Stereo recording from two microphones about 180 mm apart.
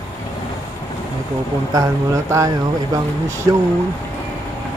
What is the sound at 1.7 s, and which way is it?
Speech, 20° right (ahead or behind).